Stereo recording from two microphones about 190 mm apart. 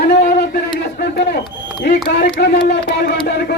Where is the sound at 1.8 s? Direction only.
60° left (ahead or behind).